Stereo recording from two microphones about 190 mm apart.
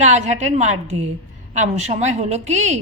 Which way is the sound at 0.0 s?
35° right (ahead or behind).